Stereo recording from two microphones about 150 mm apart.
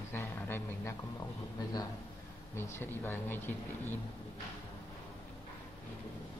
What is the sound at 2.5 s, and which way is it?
Speech, 15° left (ahead or behind).